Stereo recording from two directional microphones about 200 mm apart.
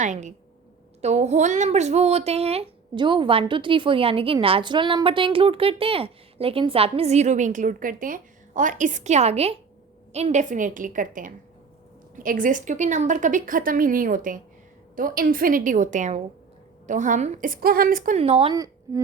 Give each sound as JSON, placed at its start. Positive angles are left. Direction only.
{"t": 0.0, "sound": "a woman's voice", "side_deg": -35}
{"t": 18.2, "sound": "a woman's voice", "side_deg": -30}